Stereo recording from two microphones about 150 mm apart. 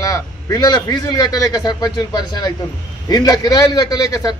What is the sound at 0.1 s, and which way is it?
A man's voice, 25° left (ahead or behind).